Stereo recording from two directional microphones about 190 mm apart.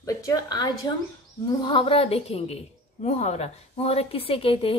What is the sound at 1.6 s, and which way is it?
A woman's voice, 30° left (ahead or behind).